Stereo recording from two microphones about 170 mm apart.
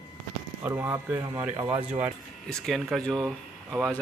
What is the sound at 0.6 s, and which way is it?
Speech, 10° right (ahead or behind).